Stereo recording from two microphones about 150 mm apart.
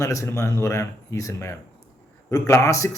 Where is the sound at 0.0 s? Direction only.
20° left (ahead or behind).